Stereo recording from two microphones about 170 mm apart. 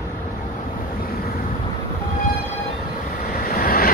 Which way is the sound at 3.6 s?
60° left (ahead or behind).